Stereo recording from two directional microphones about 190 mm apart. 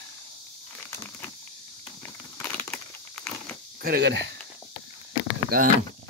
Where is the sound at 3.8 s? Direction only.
55° right (ahead or behind).